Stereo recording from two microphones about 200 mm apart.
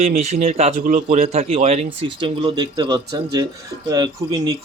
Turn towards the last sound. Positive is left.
turn(degrees=-20)  # may be behind; listen again after turning